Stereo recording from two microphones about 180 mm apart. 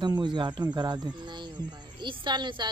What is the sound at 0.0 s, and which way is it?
Speech, 25° right (ahead or behind).